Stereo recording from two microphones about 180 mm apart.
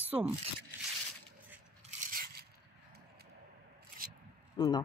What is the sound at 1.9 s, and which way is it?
Scrape, 45° right (ahead or behind).